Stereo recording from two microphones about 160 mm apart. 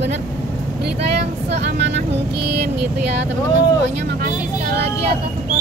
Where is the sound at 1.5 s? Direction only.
90° right.